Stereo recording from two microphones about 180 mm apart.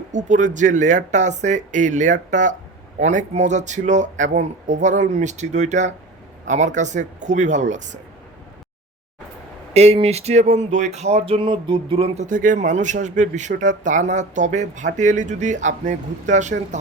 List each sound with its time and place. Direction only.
0.1 s speech: 45° right (ahead or behind)
9.7 s speech: 35° right (ahead or behind)